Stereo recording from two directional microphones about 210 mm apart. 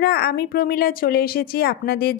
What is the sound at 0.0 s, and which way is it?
A woman's voice, 50° left (ahead or behind).